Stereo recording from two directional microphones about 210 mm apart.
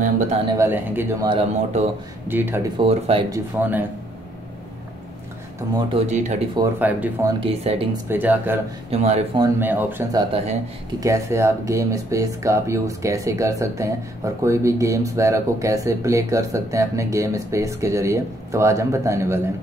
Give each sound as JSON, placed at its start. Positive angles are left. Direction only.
{"t": 0.0, "sound": "speech", "side_deg": -35}
{"t": 0.5, "sound": "speech", "side_deg": -10}
{"t": 1.3, "sound": "speech", "side_deg": -30}
{"t": 2.2, "sound": "speech", "side_deg": -10}
{"t": 2.8, "sound": "speech", "side_deg": -25}
{"t": 3.3, "sound": "speech", "side_deg": -10}
{"t": 5.9, "sound": "speech", "side_deg": -35}
{"t": 6.6, "sound": "speech", "side_deg": -5}
{"t": 7.3, "sound": "speech", "side_deg": -25}
{"t": 8.1, "sound": "speech", "side_deg": -10}
{"t": 8.9, "sound": "speech", "side_deg": -30}
{"t": 9.4, "sound": "speech", "side_deg": -10}